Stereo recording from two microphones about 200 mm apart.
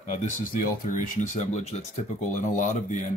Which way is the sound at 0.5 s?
40° left (ahead or behind).